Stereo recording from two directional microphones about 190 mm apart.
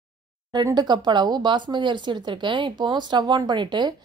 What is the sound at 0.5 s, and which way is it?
A woman's voice, 20° right (ahead or behind).